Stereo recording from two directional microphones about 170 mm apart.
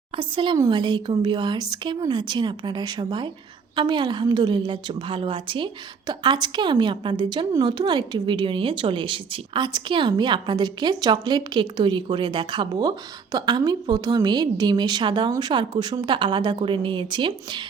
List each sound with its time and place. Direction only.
0.2 s a woman's voice: 30° right (ahead or behind)